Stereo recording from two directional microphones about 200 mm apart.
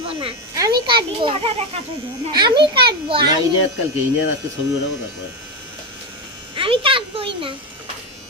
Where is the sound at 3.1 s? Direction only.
20° right (ahead or behind).